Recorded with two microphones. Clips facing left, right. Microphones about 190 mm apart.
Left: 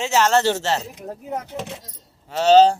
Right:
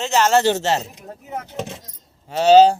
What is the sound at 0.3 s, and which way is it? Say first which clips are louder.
Speech: right 2 dB; 15° right (ahead or behind).